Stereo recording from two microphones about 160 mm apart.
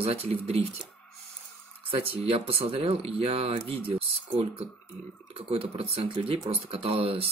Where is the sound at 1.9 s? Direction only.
35° right (ahead or behind).